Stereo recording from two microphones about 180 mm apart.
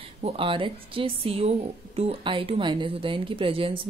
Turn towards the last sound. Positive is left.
turn(degrees=-30)  # may be behind; listen again after turning